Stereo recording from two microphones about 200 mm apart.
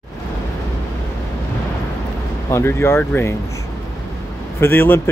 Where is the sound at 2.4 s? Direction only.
10° left (ahead or behind).